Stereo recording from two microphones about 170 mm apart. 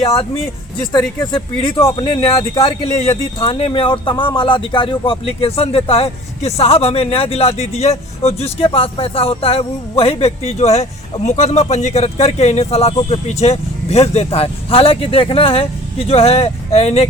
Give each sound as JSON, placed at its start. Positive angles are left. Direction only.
{"t": 1.2, "sound": "speech", "side_deg": 30}